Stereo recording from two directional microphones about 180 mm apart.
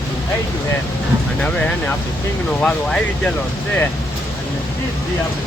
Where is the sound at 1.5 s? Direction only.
5° left (ahead or behind).